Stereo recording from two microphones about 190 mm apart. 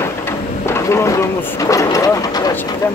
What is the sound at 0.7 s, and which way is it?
Speech, 15° left (ahead or behind).